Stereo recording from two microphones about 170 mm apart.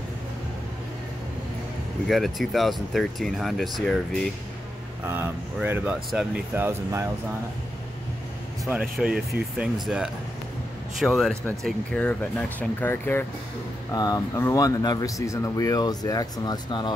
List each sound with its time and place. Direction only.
2.0 s speech: centre (ahead or behind)
5.0 s speech: 15° right (ahead or behind)
8.9 s speech: 5° right (ahead or behind); by 16.9 s 25° left (ahead or behind)